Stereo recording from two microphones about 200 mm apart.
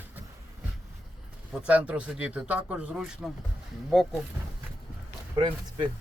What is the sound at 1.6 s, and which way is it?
Speech, 5° right (ahead or behind).